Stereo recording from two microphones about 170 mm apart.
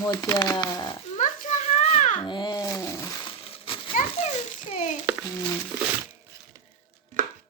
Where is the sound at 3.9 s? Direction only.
40° left (ahead or behind).